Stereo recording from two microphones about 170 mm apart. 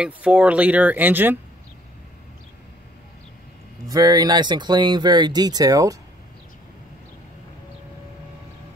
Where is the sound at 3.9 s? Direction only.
20° right (ahead or behind).